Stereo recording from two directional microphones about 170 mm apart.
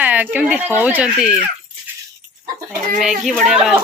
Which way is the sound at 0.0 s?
10° right (ahead or behind).